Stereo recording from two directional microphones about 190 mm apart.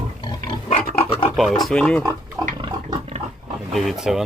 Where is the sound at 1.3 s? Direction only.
Centre (ahead or behind).